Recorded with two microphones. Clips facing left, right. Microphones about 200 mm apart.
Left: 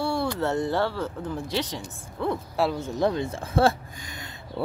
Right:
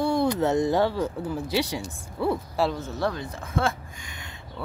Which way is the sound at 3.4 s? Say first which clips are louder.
Left 5 dB; 35° left (ahead or behind).